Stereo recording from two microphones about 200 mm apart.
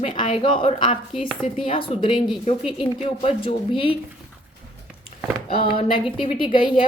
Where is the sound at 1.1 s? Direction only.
Centre (ahead or behind).